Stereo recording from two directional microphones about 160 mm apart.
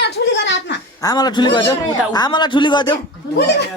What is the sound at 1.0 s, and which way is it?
Speech, 25° left (ahead or behind).